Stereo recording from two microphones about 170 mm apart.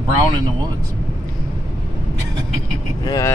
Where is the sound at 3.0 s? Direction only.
20° left (ahead or behind).